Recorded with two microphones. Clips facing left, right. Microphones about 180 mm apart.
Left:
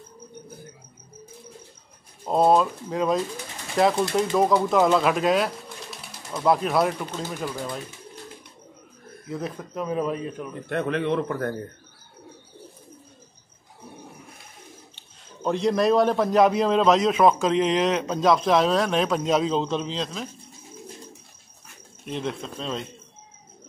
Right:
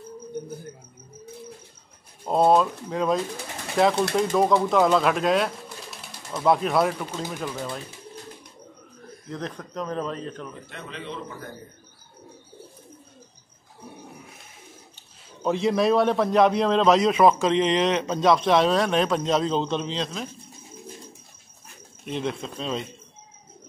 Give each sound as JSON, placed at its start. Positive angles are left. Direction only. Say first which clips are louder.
{"t": 2.2, "sound": "a man's voice", "louder": "even", "side_deg": 0}
{"t": 9.3, "sound": "speech", "louder": "left 2 dB", "side_deg": 5}
{"t": 10.7, "sound": "a man's voice", "louder": "left 17 dB", "side_deg": 60}
{"t": 15.4, "sound": "a man's voice", "louder": "even", "side_deg": 0}
{"t": 22.0, "sound": "a man's voice", "louder": "right 1 dB", "side_deg": 0}